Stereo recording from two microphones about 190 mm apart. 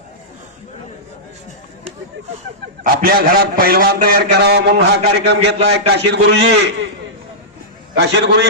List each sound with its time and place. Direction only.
2.8 s a man's voice: 50° right (ahead or behind)
7.9 s a man's voice: 65° right (ahead or behind)